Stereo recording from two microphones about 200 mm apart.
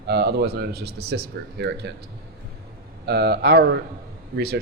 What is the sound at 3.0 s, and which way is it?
Speech, 55° right (ahead or behind).